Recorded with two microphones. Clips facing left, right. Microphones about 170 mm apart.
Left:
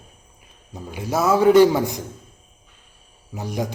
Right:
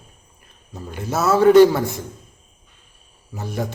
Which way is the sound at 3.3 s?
15° left (ahead or behind).